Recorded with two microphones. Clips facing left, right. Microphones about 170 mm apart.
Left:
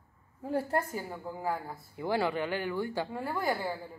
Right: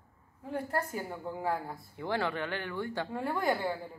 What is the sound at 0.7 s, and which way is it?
Speech, 25° left (ahead or behind).